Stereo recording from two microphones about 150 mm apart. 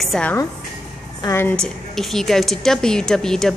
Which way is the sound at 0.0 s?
Centre (ahead or behind).